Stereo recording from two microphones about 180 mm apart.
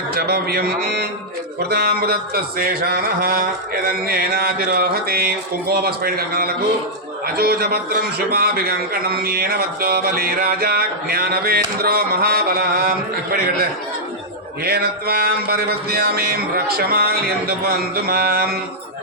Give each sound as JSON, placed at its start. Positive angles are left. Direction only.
{"t": 0.2, "sound": "a man's voice", "side_deg": -60}